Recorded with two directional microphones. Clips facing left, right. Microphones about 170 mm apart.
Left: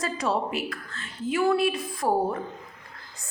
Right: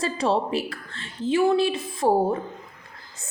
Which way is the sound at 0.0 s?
30° right (ahead or behind).